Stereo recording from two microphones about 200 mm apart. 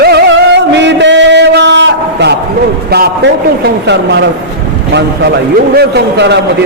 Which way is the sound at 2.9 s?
55° right (ahead or behind).